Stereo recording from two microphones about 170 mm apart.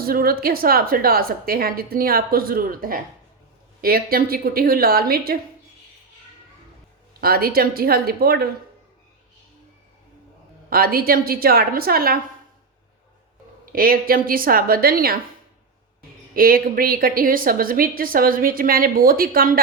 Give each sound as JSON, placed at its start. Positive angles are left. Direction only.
{"t": 0.0, "sound": "a woman's voice", "side_deg": -60}
{"t": 7.2, "sound": "a woman's voice", "side_deg": -60}
{"t": 10.7, "sound": "a woman's voice", "side_deg": -60}
{"t": 13.7, "sound": "a woman's voice", "side_deg": -60}
{"t": 16.3, "sound": "a woman's voice", "side_deg": -60}